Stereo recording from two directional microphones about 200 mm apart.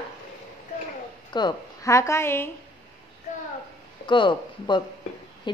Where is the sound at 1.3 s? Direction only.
20° left (ahead or behind).